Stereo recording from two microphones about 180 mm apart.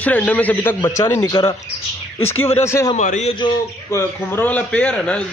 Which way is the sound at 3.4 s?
15° left (ahead or behind).